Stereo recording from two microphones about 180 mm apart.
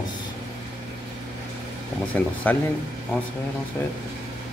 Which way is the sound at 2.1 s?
10° left (ahead or behind).